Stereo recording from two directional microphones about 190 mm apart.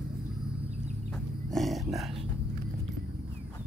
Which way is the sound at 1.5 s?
Centre (ahead or behind).